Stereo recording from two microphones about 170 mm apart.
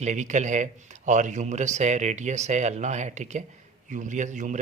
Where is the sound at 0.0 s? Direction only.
45° right (ahead or behind).